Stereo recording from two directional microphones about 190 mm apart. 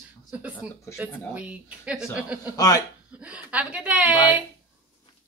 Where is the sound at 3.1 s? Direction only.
5° right (ahead or behind).